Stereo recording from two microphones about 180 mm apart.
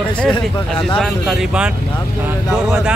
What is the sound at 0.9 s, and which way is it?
Speech, centre (ahead or behind).